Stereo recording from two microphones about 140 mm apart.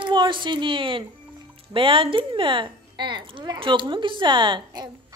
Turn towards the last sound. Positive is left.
turn(degrees=-30)  # may be behind; listen again after turning